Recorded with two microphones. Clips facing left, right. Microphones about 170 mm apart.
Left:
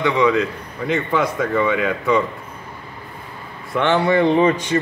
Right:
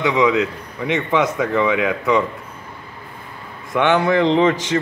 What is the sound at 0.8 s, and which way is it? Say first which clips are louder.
Speech: right 1 dB; 90° right.